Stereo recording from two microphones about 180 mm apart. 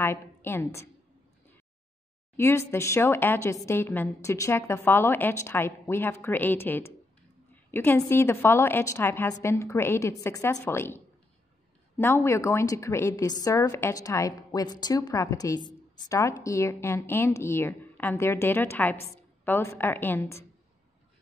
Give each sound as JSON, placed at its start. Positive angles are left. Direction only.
{"t": 0.0, "sound": "a woman's voice", "side_deg": 15}
{"t": 2.3, "sound": "a woman's voice", "side_deg": 15}
{"t": 12.0, "sound": "a woman's voice", "side_deg": 15}